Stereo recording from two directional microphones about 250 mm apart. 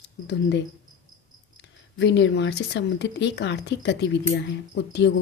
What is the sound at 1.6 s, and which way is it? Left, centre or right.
Speech, left.